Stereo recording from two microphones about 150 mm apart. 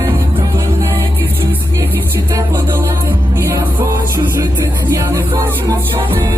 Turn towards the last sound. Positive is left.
turn(degrees=-20)  # may be behind; listen again after turning